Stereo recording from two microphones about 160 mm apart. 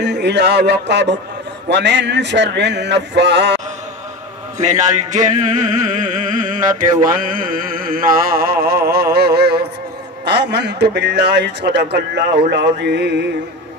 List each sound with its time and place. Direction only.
0.0 s a man's voice: 90° right
4.6 s music: 50° right (ahead or behind)
7.0 s a sound: 60° right (ahead or behind); by 9.7 s 90° right
10.2 s a man's voice: 90° right